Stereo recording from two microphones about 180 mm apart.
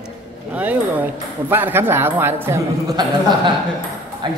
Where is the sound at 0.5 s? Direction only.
10° right (ahead or behind).